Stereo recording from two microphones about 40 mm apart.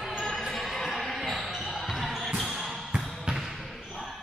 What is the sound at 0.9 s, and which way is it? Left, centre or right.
Basketball bounce, centre.